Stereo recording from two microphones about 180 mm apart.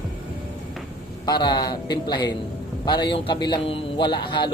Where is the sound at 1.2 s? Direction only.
25° left (ahead or behind).